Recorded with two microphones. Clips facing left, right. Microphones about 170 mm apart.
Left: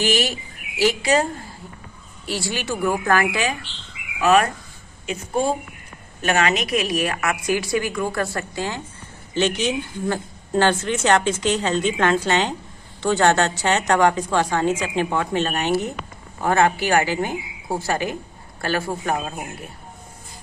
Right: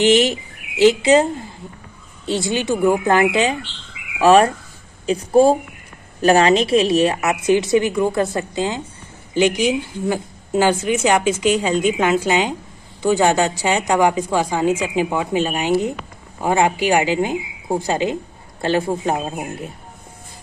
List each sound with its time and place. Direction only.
0.0 s a woman's voice: 20° right (ahead or behind)
4.2 s a woman's voice: 30° right (ahead or behind); by 19.7 s 15° right (ahead or behind)